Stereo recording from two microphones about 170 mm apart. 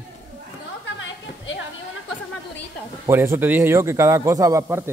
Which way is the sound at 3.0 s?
15° right (ahead or behind).